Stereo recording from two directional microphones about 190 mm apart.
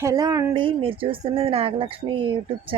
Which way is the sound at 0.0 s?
20° right (ahead or behind).